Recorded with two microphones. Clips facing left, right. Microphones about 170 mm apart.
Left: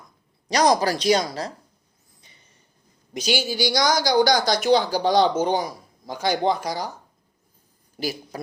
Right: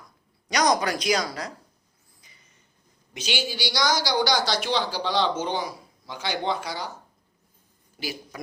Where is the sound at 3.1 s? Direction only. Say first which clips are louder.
Left 6 dB; 40° left (ahead or behind).